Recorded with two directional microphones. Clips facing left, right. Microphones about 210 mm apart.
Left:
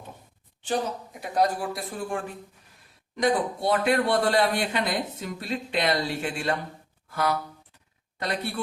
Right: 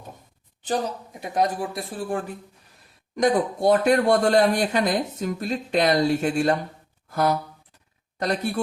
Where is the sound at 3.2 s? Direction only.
45° right (ahead or behind).